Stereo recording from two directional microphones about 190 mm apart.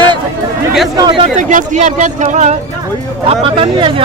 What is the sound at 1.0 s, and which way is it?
Speech, 25° right (ahead or behind).